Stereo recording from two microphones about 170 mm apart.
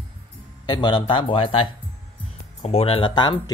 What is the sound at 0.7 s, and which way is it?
Speech, 25° left (ahead or behind).